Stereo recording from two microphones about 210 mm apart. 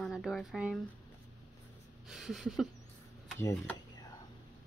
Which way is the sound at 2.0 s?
Centre (ahead or behind).